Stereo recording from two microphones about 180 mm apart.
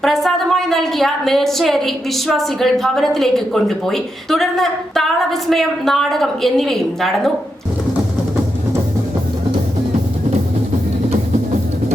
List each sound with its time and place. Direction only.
0.0 s a woman's voice: centre (ahead or behind)